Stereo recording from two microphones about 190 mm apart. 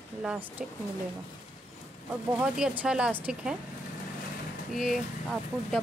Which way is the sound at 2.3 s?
5° right (ahead or behind).